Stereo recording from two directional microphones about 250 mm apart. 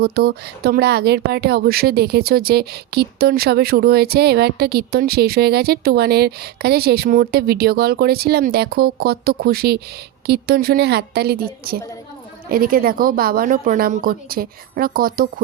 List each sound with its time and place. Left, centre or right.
0.0 s speech: right